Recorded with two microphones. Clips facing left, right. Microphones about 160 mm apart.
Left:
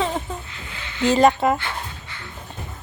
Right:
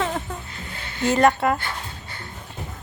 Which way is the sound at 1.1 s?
20° left (ahead or behind).